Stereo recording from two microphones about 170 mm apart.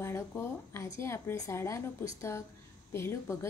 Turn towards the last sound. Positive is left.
turn(degrees=15)  # may be behind; listen again after turning